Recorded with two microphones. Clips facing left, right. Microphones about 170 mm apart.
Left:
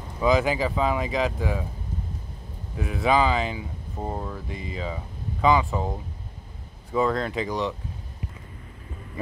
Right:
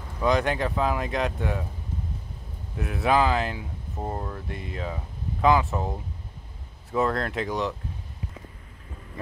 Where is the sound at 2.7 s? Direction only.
Centre (ahead or behind).